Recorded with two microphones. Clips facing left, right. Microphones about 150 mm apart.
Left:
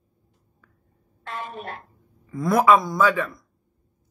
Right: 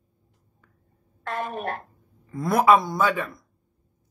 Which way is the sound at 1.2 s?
45° right (ahead or behind).